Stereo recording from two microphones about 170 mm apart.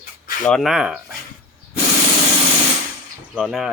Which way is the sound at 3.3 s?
Centre (ahead or behind).